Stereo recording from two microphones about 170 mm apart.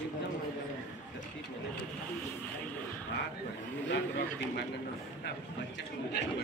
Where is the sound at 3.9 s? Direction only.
90° left.